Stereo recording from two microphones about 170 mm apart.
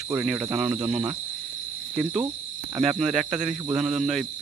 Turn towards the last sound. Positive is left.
turn(degrees=0)  # may be behind; listen again after turning